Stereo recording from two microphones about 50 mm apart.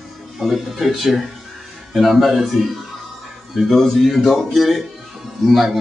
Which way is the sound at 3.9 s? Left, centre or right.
Centre.